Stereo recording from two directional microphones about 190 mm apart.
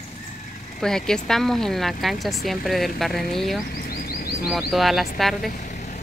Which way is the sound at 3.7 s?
55° left (ahead or behind).